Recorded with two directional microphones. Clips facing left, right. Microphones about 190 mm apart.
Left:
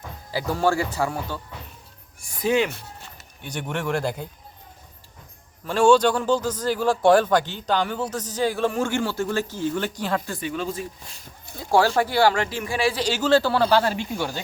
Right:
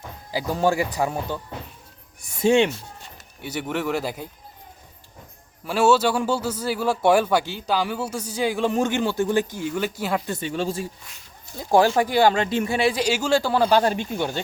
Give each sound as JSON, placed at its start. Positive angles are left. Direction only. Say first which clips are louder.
{"t": 0.3, "sound": "speech", "louder": "right 1 dB", "side_deg": -15}
{"t": 3.4, "sound": "speech", "louder": "right 2 dB", "side_deg": -5}
{"t": 5.6, "sound": "speech", "louder": "left 2 dB", "side_deg": -5}
{"t": 10.2, "sound": "speech", "louder": "right 2 dB", "side_deg": -25}
{"t": 11.7, "sound": "speech", "louder": "right 2 dB", "side_deg": -15}
{"t": 13.0, "sound": "speech", "louder": "left 1 dB", "side_deg": -10}